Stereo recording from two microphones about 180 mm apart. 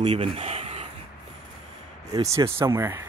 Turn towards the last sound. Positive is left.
turn(degrees=-15)  # may be behind; listen again after turning